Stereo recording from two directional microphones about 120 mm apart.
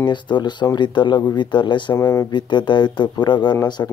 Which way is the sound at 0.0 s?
40° left (ahead or behind).